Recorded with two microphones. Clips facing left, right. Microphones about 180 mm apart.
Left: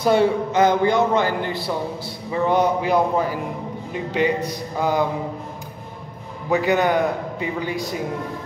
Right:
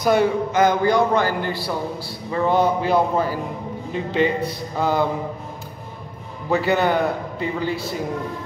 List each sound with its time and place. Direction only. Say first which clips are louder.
0.0 s a man's voice: left 1 dB; 30° left (ahead or behind)
6.5 s a man's voice: even; 15° left (ahead or behind)